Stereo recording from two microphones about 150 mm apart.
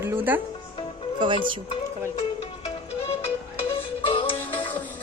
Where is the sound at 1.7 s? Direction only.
40° left (ahead or behind).